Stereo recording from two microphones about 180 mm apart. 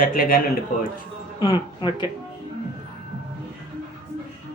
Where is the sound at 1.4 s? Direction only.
25° left (ahead or behind).